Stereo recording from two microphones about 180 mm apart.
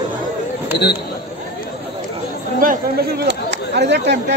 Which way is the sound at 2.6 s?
50° right (ahead or behind).